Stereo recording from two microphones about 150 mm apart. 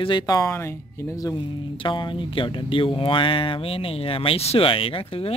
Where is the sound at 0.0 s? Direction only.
30° left (ahead or behind).